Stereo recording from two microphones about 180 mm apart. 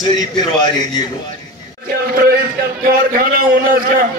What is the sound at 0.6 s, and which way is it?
Speech, 25° left (ahead or behind).